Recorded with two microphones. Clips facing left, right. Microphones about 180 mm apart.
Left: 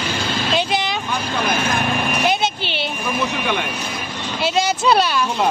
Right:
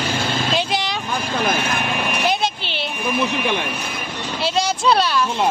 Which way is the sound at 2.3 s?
Centre (ahead or behind).